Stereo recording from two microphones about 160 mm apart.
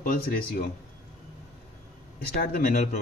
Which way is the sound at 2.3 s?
60° left (ahead or behind).